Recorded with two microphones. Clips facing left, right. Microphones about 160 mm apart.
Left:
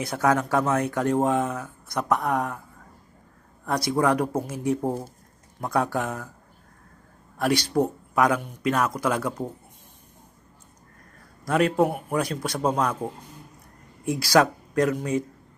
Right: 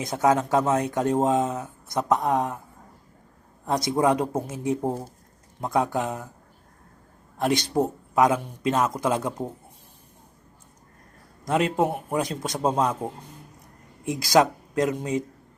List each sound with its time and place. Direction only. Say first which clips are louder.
0.0 s speech: right 1 dB; 20° right (ahead or behind)
3.7 s speech: right 1 dB; 20° right (ahead or behind)
7.3 s speech: even; 20° right (ahead or behind)
11.4 s speech: left 2 dB; 20° right (ahead or behind)
14.0 s speech: even; 20° right (ahead or behind)